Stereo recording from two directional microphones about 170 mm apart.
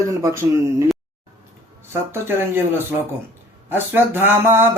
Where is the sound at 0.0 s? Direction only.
20° right (ahead or behind).